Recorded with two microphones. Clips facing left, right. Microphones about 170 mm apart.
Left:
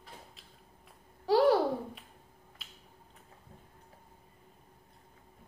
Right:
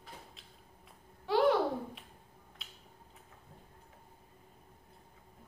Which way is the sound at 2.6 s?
Centre (ahead or behind).